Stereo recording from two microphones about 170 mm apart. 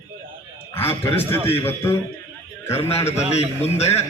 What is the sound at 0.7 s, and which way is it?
A man's voice, 15° left (ahead or behind).